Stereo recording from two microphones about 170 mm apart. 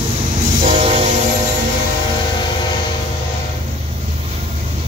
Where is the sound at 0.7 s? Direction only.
35° right (ahead or behind).